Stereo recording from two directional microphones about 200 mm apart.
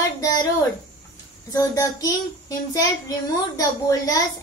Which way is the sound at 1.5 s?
15° left (ahead or behind).